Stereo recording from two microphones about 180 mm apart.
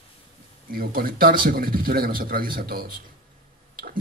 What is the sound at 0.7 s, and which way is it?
Speech, 55° right (ahead or behind).